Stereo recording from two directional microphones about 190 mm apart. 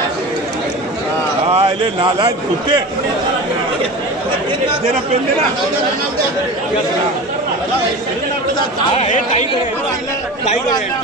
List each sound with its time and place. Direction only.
1.5 s a man's voice: 30° right (ahead or behind)
8.5 s speech: 35° left (ahead or behind)